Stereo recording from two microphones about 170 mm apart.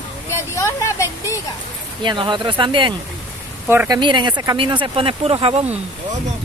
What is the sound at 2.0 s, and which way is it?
Speech, 30° right (ahead or behind).